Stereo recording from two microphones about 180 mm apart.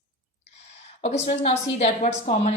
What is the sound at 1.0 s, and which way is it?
A woman's voice, 35° left (ahead or behind).